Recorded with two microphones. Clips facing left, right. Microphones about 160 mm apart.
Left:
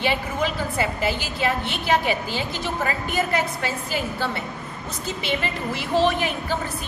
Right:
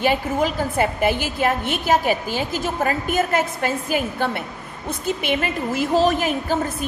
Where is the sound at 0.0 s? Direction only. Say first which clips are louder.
Right 4 dB; 45° right (ahead or behind).